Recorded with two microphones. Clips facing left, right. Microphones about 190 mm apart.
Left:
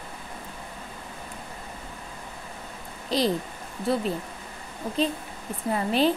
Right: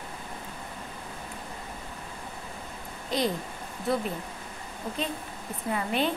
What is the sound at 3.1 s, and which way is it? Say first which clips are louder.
Speech: left 3 dB; 35° left (ahead or behind).